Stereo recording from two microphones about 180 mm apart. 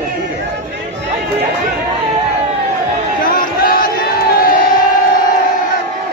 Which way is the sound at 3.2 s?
50° left (ahead or behind).